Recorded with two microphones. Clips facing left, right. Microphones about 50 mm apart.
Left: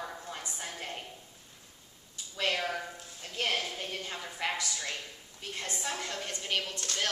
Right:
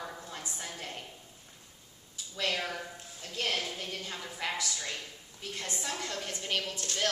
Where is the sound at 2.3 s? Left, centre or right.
Centre.